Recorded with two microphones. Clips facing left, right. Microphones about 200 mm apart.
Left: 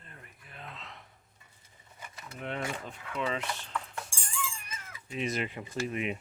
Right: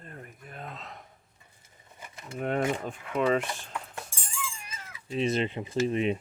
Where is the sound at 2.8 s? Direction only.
50° right (ahead or behind).